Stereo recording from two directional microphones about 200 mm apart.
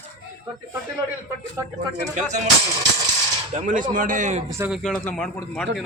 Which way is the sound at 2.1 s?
35° right (ahead or behind).